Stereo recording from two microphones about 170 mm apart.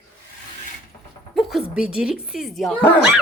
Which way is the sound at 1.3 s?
Centre (ahead or behind).